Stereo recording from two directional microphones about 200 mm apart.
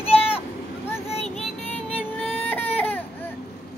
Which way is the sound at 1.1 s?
30° left (ahead or behind).